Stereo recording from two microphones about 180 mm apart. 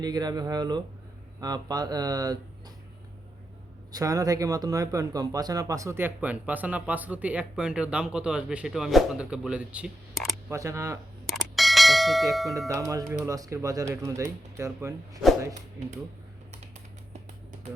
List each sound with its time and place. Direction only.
0.0 s speech: 20° right (ahead or behind)
3.9 s speech: 20° right (ahead or behind); by 10.3 s centre (ahead or behind)
10.5 s speech: 15° right (ahead or behind)
11.3 s bell: centre (ahead or behind)
12.6 s speech: 15° right (ahead or behind)